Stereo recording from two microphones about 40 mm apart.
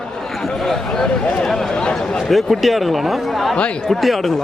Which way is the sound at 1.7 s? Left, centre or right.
Left.